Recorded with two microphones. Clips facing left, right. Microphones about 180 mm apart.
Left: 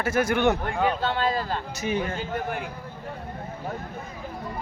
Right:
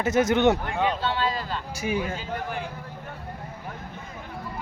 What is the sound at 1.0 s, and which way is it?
Speech, 50° left (ahead or behind).